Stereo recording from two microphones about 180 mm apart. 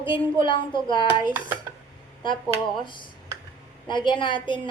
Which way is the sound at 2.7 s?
25° left (ahead or behind).